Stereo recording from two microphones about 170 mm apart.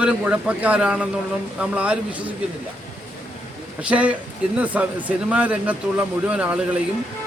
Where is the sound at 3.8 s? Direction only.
10° right (ahead or behind).